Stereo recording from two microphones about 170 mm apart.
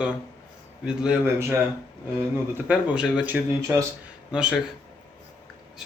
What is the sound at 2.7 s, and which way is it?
Speech, 5° right (ahead or behind).